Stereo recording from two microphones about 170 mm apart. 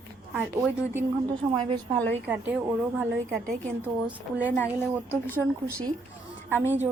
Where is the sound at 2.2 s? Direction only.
10° right (ahead or behind).